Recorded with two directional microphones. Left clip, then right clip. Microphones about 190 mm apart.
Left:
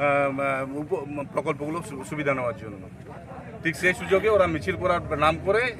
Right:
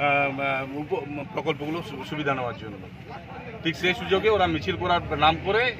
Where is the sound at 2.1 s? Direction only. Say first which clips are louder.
Left 1 dB; 30° left (ahead or behind).